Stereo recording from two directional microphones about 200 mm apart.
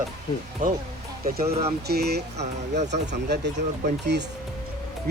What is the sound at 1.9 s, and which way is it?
Speech, 55° right (ahead or behind).